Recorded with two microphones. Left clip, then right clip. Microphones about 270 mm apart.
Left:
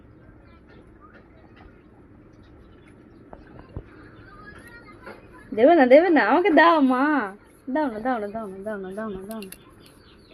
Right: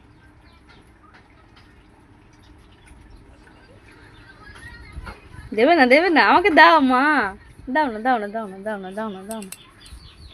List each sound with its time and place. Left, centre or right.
5.5 s a woman's voice: right